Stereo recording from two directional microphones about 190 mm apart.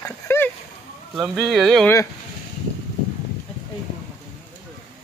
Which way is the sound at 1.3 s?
Centre (ahead or behind).